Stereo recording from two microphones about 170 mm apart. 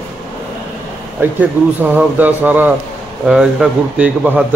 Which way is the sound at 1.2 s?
10° right (ahead or behind).